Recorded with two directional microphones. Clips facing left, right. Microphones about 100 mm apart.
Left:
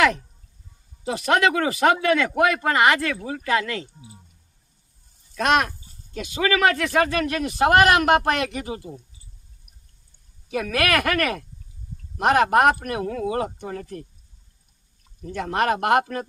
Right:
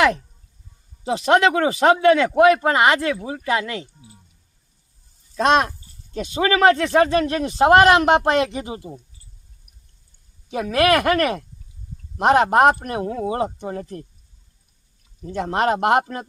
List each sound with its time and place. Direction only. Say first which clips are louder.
1.0 s speech: right 4 dB; 25° right (ahead or behind)
5.4 s speech: right 3 dB; 30° right (ahead or behind)
10.5 s speech: right 5 dB; 25° right (ahead or behind)
15.3 s speech: right 2 dB; 25° right (ahead or behind)